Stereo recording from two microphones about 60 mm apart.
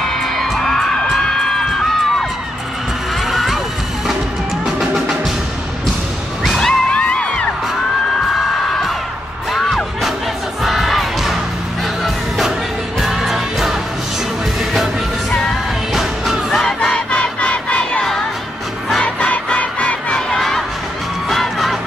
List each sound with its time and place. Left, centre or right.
0.2 s music: centre
3.3 s a sound: centre
4.6 s music: centre
6.4 s music: centre
6.9 s music: centre
9.5 s music: centre
10.6 s crowd: centre
12.0 s music: centre
15.9 s music: centre
16.6 s battle cry: centre
19.0 s music: left
20.2 s a sound: centre
21.3 s music: centre